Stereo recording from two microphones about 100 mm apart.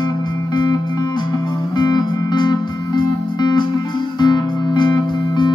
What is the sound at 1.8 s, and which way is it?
Music, 45° left (ahead or behind).